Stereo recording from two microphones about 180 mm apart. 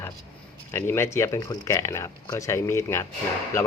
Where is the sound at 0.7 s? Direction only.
15° left (ahead or behind).